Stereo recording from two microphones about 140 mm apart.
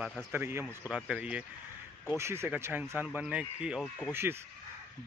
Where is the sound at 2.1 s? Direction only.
20° right (ahead or behind).